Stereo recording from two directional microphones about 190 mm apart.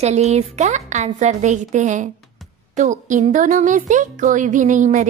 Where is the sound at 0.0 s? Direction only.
35° right (ahead or behind).